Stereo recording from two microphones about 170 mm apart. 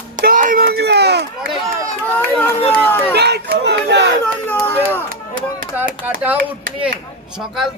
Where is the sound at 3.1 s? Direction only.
75° right (ahead or behind).